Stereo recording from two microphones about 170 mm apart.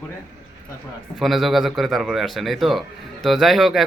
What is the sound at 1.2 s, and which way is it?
Speech, centre (ahead or behind).